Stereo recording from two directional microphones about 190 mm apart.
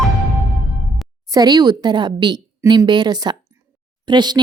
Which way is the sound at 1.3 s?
20° right (ahead or behind).